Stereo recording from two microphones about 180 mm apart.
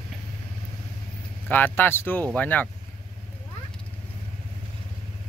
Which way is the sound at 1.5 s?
10° left (ahead or behind).